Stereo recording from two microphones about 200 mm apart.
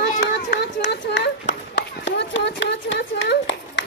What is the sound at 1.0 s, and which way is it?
Run, 65° left (ahead or behind).